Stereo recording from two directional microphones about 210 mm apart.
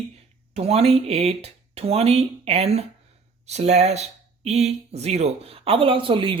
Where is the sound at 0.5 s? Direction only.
30° right (ahead or behind).